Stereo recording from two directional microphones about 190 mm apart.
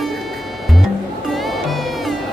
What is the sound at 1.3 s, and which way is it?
Music, centre (ahead or behind).